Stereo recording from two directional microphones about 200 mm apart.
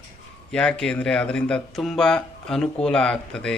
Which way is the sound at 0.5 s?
5° left (ahead or behind).